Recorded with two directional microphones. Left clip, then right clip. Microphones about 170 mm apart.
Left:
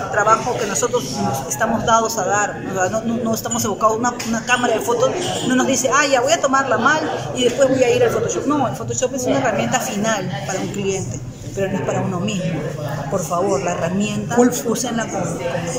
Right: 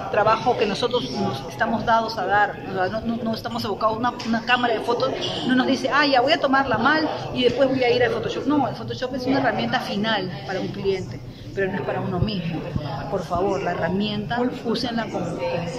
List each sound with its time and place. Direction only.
0.3 s a man's voice: 5° left (ahead or behind)
1.6 s speech: 15° left (ahead or behind)
13.3 s speech: 10° left (ahead or behind)